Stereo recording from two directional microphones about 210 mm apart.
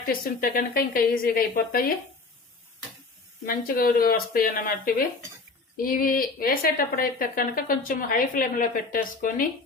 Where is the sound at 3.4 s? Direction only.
45° left (ahead or behind).